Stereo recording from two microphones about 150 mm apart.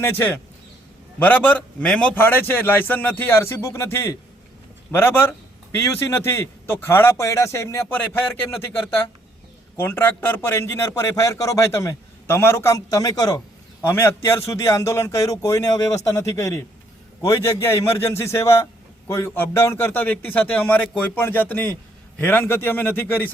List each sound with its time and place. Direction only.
0.0 s a man's voice: 15° left (ahead or behind)
9.7 s a man's voice: 15° left (ahead or behind)